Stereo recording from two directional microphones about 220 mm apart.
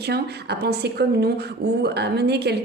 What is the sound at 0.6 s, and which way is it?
A woman's voice, 50° right (ahead or behind).